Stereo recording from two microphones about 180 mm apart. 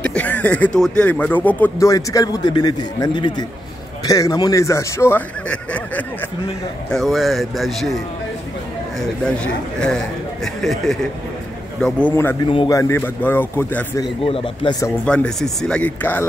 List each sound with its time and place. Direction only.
0.0 s speech: 5° left (ahead or behind)
9.2 s speech: 5° left (ahead or behind)
14.2 s speech: 30° left (ahead or behind)
15.0 s speech: 5° left (ahead or behind)